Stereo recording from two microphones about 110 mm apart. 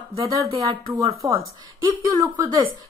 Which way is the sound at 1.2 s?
20° right (ahead or behind).